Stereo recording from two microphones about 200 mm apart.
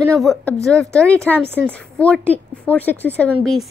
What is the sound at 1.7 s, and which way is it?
Speech, 5° left (ahead or behind).